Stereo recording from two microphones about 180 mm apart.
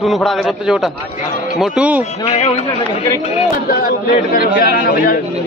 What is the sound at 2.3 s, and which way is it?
Speech, 35° left (ahead or behind).